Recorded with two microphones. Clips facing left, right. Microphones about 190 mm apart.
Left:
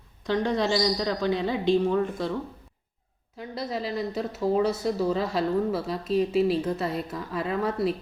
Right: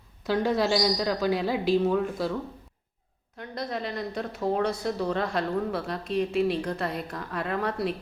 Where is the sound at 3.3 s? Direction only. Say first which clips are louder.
Left 1 dB; 5° left (ahead or behind).